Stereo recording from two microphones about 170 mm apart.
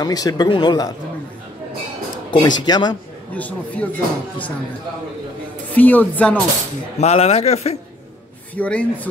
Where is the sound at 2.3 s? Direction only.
25° left (ahead or behind).